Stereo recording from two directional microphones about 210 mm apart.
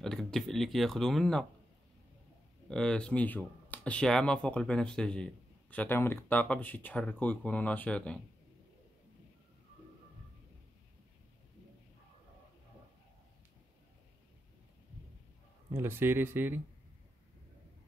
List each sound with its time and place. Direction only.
0.0 s speech: centre (ahead or behind)
2.7 s speech: 5° left (ahead or behind)
15.7 s speech: 10° right (ahead or behind)